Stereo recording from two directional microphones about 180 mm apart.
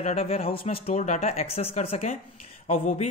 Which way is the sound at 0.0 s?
35° left (ahead or behind).